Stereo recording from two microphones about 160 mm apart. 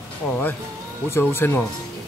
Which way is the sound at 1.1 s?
15° left (ahead or behind).